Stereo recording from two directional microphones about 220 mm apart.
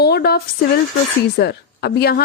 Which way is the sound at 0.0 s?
45° left (ahead or behind).